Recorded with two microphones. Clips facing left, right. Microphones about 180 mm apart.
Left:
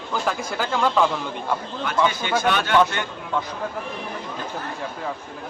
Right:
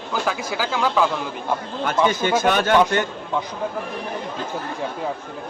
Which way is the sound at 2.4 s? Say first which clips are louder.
Right 1 dB; 45° right (ahead or behind).